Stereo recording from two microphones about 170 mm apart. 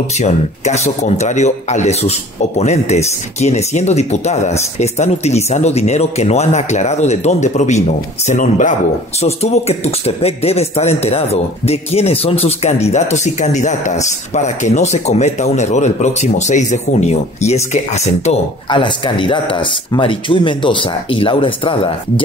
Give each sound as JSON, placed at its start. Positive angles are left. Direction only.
{"t": 0.2, "sound": "a man's voice", "side_deg": 40}
{"t": 18.7, "sound": "speech", "side_deg": 30}